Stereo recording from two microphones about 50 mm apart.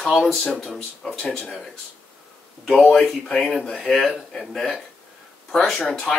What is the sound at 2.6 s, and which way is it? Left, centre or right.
Speech, centre.